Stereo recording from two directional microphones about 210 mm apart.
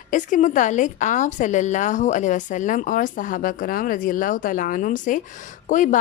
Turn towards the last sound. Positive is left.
turn(degrees=35)  # may be behind; listen again after turning